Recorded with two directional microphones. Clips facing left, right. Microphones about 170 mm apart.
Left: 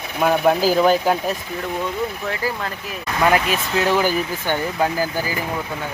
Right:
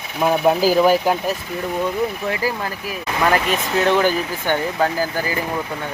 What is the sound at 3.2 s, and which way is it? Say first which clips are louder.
Speech: left 1 dB; 5° left (ahead or behind).